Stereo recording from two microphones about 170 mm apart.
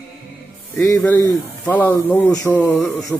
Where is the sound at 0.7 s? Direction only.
10° left (ahead or behind).